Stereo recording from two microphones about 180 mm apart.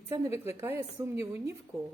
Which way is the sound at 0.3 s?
10° right (ahead or behind).